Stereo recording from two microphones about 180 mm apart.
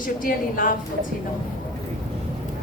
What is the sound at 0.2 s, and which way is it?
Speech, 50° left (ahead or behind).